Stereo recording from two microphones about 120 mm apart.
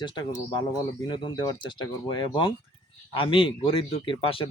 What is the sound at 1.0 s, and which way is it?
A man's voice, 40° left (ahead or behind).